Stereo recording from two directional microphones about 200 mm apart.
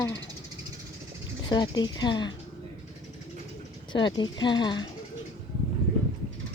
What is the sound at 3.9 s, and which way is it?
Speech, 20° left (ahead or behind).